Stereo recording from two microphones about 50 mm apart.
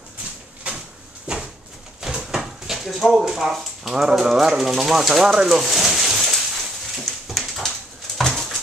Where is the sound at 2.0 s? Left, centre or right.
Centre.